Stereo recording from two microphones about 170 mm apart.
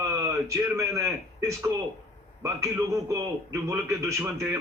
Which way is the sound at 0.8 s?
15° right (ahead or behind).